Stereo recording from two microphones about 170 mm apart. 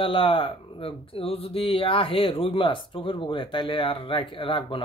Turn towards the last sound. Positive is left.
turn(degrees=30)  # may be behind; listen again after turning